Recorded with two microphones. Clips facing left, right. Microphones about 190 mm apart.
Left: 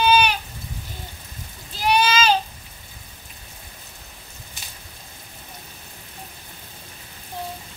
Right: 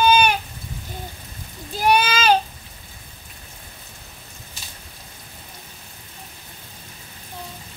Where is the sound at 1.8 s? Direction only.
50° right (ahead or behind).